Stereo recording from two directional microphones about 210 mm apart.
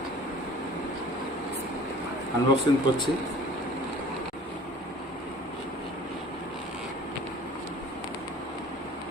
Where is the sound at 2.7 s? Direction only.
20° left (ahead or behind).